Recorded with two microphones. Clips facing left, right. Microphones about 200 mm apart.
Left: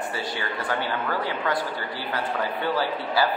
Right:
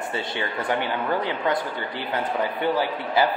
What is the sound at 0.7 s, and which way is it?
A man's voice, 20° right (ahead or behind).